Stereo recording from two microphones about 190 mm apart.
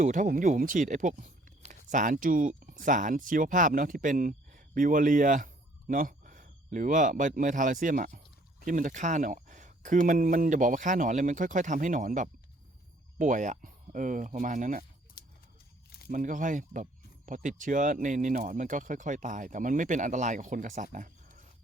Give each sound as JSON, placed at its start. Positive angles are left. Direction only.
{"t": 0.0, "sound": "speech", "side_deg": -40}
{"t": 15.2, "sound": "a sound", "side_deg": 50}
{"t": 16.0, "sound": "speech", "side_deg": -45}